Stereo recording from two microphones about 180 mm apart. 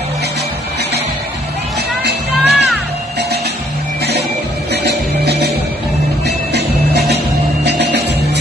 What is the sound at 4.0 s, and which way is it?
Music, 65° right (ahead or behind).